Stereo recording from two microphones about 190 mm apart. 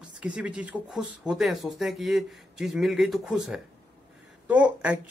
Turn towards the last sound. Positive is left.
turn(degrees=-5)  # may be behind; listen again after turning